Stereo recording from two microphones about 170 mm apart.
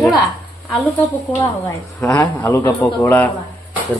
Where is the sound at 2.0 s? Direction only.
15° left (ahead or behind).